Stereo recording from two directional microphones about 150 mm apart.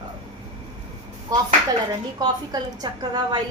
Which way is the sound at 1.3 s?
25° right (ahead or behind).